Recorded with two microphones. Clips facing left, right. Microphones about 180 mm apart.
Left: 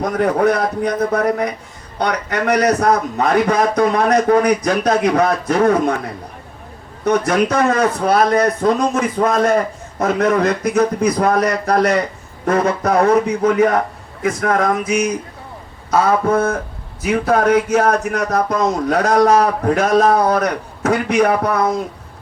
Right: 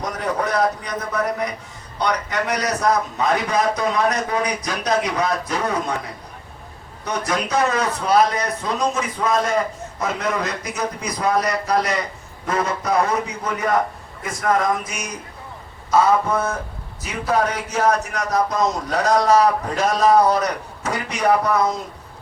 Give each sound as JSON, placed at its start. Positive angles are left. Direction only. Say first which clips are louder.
{"t": 0.0, "sound": "a man's voice", "louder": "left 9 dB", "side_deg": 55}
{"t": 7.0, "sound": "a man's voice", "louder": "left 9 dB", "side_deg": 55}